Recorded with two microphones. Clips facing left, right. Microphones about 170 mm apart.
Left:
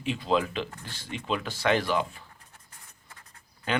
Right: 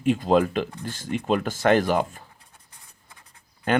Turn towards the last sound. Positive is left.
turn(degrees=-50)  # may be behind; listen again after turning